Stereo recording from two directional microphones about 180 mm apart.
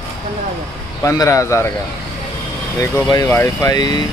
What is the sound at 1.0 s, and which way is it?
Speech, 15° left (ahead or behind).